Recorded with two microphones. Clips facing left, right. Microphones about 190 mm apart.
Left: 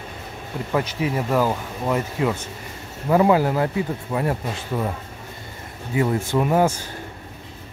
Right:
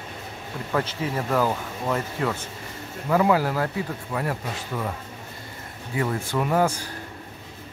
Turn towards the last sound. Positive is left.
turn(degrees=20)  # may be behind; listen again after turning